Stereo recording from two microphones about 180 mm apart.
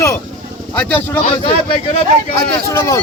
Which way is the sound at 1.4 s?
30° left (ahead or behind).